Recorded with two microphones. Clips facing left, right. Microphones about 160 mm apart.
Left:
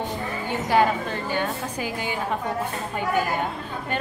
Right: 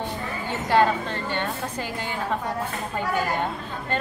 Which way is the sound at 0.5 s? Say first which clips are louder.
Even; 15° left (ahead or behind).